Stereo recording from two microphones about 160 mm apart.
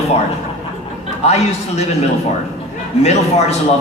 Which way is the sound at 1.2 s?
40° left (ahead or behind).